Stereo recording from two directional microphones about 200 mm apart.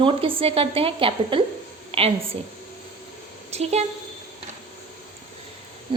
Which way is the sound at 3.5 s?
30° right (ahead or behind).